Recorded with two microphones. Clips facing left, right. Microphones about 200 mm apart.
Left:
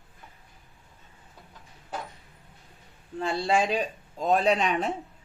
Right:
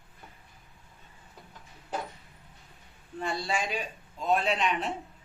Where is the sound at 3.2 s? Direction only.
30° left (ahead or behind).